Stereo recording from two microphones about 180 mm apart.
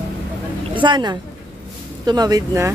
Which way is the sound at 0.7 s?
25° right (ahead or behind).